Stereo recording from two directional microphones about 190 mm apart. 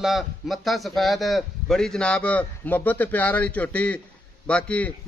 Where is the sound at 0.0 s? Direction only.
Centre (ahead or behind).